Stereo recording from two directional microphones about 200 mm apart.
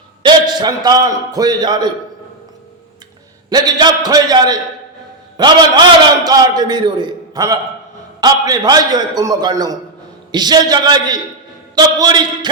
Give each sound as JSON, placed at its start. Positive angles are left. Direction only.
{"t": 0.2, "sound": "a man's voice", "side_deg": -20}
{"t": 3.5, "sound": "a man's voice", "side_deg": -20}